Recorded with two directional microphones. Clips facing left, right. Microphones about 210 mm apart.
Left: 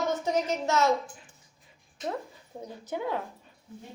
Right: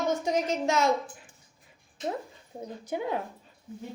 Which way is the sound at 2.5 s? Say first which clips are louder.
Right 1 dB; 15° right (ahead or behind).